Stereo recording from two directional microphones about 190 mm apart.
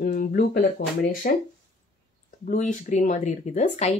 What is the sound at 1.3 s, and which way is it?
Speech, 50° left (ahead or behind).